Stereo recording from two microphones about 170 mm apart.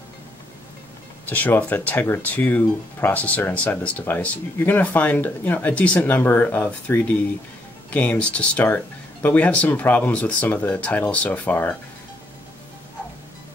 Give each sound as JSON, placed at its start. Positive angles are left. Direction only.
{"t": 1.3, "sound": "speech", "side_deg": 10}